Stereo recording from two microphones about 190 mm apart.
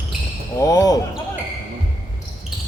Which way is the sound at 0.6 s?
20° left (ahead or behind).